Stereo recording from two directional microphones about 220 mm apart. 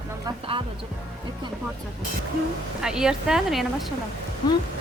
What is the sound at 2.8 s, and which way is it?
Speech, 5° right (ahead or behind).